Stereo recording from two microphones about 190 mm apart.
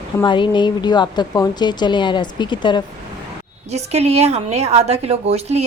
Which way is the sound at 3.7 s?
35° right (ahead or behind).